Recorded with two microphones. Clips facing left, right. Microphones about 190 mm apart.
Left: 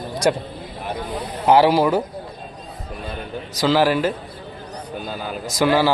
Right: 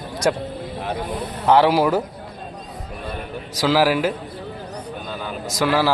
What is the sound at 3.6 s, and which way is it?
Speech, 5° right (ahead or behind).